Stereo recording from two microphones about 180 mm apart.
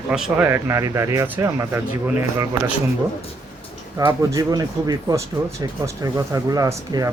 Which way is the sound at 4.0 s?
20° right (ahead or behind).